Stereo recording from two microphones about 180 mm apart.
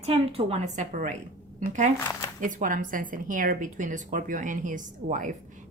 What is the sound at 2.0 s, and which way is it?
Speech, 15° left (ahead or behind).